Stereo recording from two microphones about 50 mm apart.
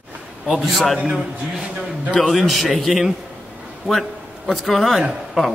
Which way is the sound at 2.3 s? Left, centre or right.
Centre.